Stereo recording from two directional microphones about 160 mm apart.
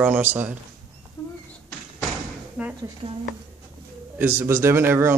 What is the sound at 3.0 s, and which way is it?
Speech, 35° right (ahead or behind).